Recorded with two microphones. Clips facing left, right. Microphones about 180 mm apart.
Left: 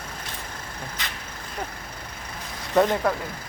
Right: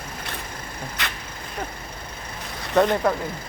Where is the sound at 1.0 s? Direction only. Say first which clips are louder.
Right 6 dB; 70° right (ahead or behind).